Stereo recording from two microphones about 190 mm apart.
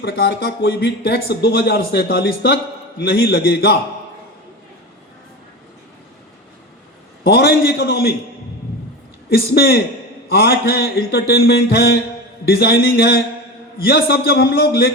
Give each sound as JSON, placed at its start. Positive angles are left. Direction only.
{"t": 0.0, "sound": "speech", "side_deg": 55}
{"t": 7.3, "sound": "speech", "side_deg": 55}
{"t": 9.3, "sound": "speech", "side_deg": 55}